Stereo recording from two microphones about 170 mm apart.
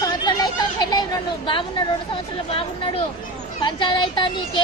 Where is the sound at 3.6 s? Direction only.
30° left (ahead or behind).